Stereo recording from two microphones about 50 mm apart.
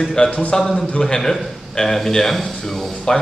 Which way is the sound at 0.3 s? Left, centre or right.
Left.